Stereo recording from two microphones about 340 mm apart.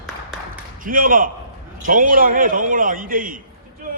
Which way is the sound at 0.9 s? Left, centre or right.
Right.